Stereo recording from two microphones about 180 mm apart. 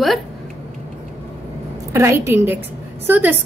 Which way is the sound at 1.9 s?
15° right (ahead or behind).